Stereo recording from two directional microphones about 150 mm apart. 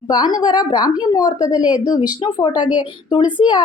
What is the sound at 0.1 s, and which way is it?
Speech, 30° left (ahead or behind).